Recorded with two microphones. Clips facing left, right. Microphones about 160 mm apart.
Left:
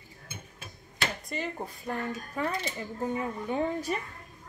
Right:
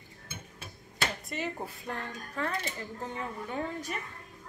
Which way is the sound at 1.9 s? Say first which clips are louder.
Left 5 dB; 10° left (ahead or behind).